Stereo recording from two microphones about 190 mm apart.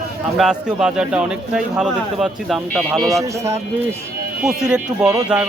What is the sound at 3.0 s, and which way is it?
Speech, 15° right (ahead or behind).